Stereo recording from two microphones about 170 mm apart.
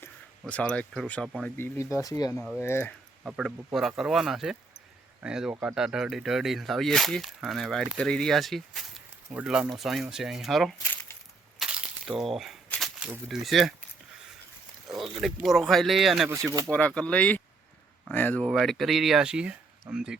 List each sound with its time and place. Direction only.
0.0 s speech: 10° left (ahead or behind)
3.2 s speech: 5° right (ahead or behind)
11.6 s a sound: 5° right (ahead or behind)
13.0 s speech: 5° right (ahead or behind)
15.4 s speech: centre (ahead or behind)
16.3 s speech: 20° right (ahead or behind)
16.7 s speech: 5° left (ahead or behind)